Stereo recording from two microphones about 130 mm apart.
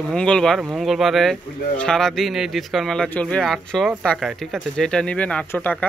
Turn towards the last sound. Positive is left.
turn(degrees=10)  # may be behind; listen again after turning